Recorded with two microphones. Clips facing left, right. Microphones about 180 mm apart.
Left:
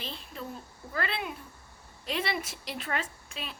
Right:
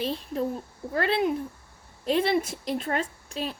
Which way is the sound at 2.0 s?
40° right (ahead or behind).